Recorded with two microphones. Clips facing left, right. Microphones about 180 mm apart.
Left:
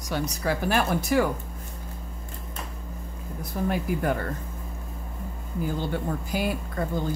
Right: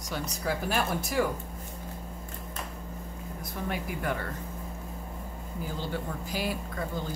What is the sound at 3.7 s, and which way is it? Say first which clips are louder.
Speech: left 6 dB; 40° left (ahead or behind).